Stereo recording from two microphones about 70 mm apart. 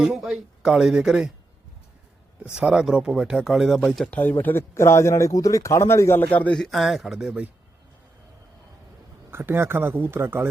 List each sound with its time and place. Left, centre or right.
0.0 s speech: centre
2.4 s speech: centre
4.0 s speech: left
6.5 s speech: centre
9.3 s speech: right